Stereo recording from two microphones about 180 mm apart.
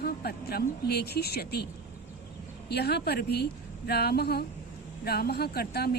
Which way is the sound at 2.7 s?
65° left (ahead or behind).